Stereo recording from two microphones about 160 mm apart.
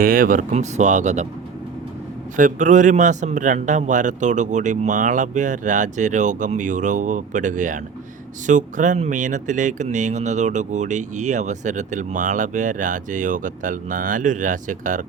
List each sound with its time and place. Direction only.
0.0 s speech: 60° right (ahead or behind); by 1.3 s 45° right (ahead or behind)
2.3 s speech: 55° right (ahead or behind)